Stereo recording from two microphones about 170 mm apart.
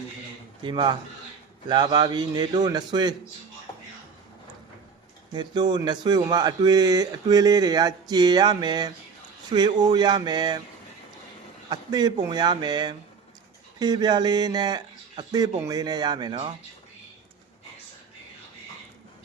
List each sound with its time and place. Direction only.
0.6 s speech: 25° right (ahead or behind)
5.3 s speech: 25° right (ahead or behind)
11.7 s speech: 25° right (ahead or behind)